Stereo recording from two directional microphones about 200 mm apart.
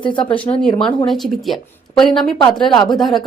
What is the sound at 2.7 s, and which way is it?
Speech, 20° left (ahead or behind).